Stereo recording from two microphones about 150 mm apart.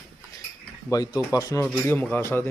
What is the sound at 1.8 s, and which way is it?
Speech, 10° left (ahead or behind).